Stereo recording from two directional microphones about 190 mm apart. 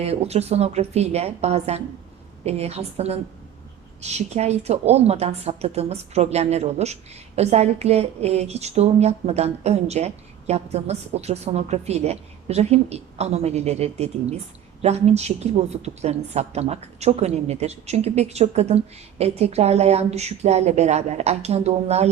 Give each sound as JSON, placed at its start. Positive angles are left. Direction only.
{"t": 0.0, "sound": "a woman's voice", "side_deg": -35}